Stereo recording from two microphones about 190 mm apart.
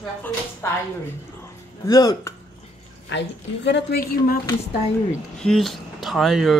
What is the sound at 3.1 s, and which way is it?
Speech, 65° left (ahead or behind).